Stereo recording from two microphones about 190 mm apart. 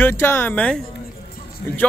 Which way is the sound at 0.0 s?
10° left (ahead or behind).